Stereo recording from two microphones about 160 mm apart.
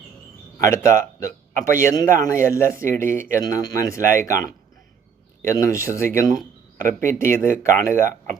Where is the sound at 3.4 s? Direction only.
20° left (ahead or behind).